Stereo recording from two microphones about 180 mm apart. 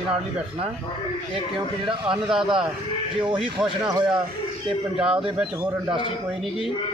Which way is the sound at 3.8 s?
20° right (ahead or behind).